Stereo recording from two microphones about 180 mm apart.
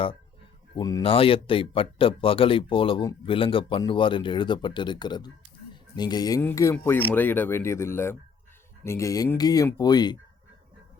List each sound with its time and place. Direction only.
0.8 s speech: 20° left (ahead or behind)
1.0 s speech: 30° left (ahead or behind)